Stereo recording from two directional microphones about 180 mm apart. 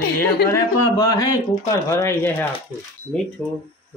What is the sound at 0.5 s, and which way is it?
Speech, 20° left (ahead or behind).